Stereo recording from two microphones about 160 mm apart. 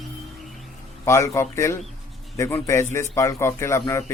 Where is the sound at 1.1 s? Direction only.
15° left (ahead or behind).